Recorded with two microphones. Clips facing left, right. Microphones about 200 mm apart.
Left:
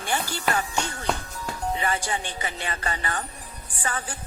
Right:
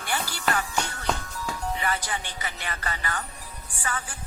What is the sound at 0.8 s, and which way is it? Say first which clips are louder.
Speech: left 1 dB; 10° left (ahead or behind).